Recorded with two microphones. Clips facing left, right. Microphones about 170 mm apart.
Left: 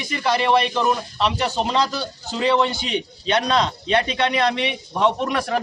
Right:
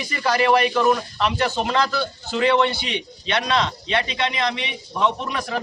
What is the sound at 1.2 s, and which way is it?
A man's voice, 30° left (ahead or behind).